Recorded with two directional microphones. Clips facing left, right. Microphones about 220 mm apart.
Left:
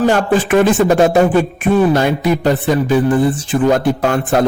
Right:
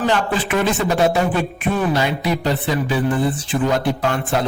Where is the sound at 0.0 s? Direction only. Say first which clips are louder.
Left 6 dB; 45° left (ahead or behind).